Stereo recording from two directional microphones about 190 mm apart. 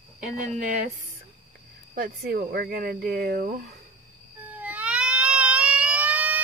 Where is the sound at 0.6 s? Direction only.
45° right (ahead or behind).